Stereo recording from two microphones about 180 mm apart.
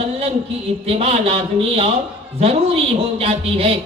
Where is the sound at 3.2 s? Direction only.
35° right (ahead or behind).